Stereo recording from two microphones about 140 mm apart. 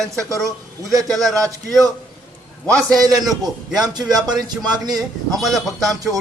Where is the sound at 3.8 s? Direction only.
30° right (ahead or behind).